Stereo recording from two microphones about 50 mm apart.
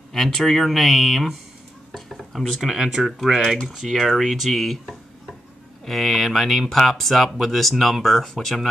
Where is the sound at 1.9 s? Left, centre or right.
Centre.